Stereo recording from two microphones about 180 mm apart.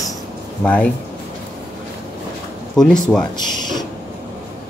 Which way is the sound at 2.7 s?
5° left (ahead or behind).